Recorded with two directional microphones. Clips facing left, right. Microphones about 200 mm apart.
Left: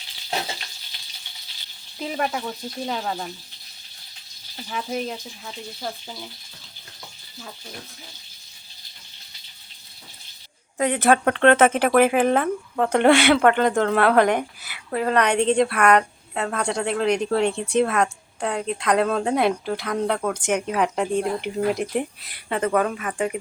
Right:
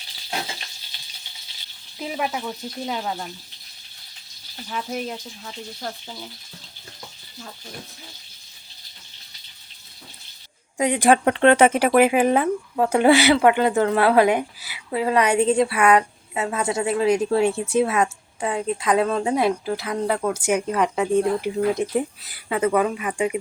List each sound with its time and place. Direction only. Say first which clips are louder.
2.0 s a woman's voice: left 1 dB; 5° right (ahead or behind)
4.7 s a woman's voice: left 1 dB; centre (ahead or behind)
10.8 s a woman's voice: right 1 dB; 15° right (ahead or behind)
20.6 s a woman's voice: right 1 dB; 5° left (ahead or behind)